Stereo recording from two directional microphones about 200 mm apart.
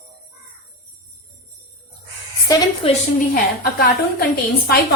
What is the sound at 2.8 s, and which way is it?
Speech, 30° left (ahead or behind).